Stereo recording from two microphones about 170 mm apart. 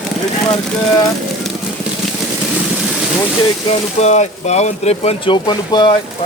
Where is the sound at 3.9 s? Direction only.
40° left (ahead or behind); by 5.9 s 25° left (ahead or behind).